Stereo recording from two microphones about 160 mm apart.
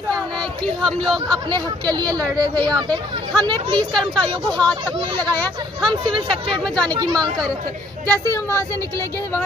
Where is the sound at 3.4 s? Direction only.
30° right (ahead or behind).